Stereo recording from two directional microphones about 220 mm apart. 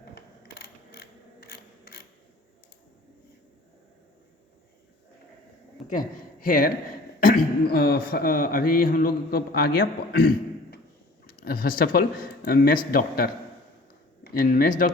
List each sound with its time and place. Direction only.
0.0 s mechanisms: 45° left (ahead or behind)
5.9 s speech: 40° left (ahead or behind)
14.3 s speech: 40° left (ahead or behind)